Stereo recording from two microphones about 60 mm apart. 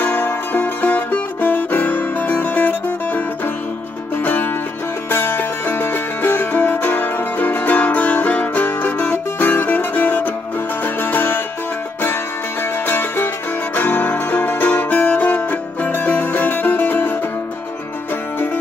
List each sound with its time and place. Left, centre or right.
0.0 s music: left
12.8 s music: left